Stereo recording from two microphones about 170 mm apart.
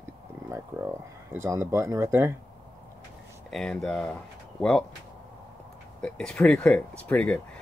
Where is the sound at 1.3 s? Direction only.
15° right (ahead or behind).